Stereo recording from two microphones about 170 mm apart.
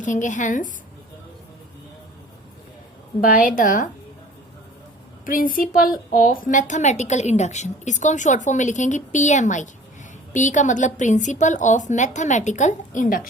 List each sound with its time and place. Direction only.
0.0 s a woman's voice: 45° left (ahead or behind)
3.2 s a woman's voice: 55° left (ahead or behind)
5.2 s a woman's voice: 55° left (ahead or behind)